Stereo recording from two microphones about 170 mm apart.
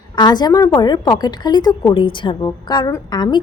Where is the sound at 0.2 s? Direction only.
25° left (ahead or behind).